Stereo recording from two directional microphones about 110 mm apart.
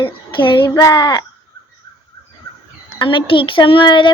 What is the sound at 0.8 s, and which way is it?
Speech, 35° left (ahead or behind).